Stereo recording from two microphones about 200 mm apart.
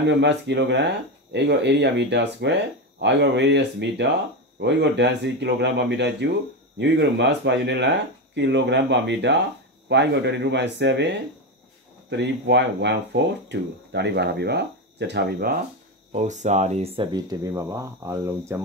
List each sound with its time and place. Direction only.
0.1 s speech: 60° right (ahead or behind)
16.1 s speech: 35° right (ahead or behind); by 18.6 s 15° right (ahead or behind)